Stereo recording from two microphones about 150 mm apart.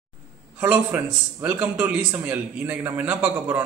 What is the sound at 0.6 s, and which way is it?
A man's voice, 10° right (ahead or behind).